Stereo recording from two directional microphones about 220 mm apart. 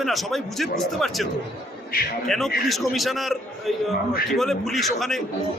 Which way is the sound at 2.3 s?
Centre (ahead or behind).